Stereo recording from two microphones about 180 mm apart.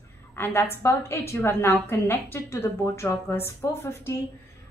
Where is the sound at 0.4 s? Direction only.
15° left (ahead or behind).